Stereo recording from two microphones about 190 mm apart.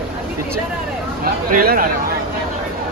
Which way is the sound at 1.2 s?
50° right (ahead or behind).